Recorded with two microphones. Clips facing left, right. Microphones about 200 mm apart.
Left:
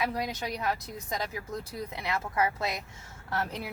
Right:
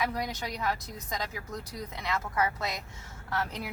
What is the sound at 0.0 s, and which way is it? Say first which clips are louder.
Speech: left 1 dB; 25° left (ahead or behind).